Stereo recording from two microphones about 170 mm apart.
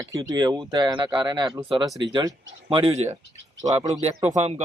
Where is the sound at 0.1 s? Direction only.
20° right (ahead or behind).